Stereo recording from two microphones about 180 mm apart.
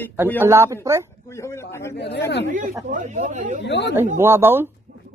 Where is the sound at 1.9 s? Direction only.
70° left (ahead or behind).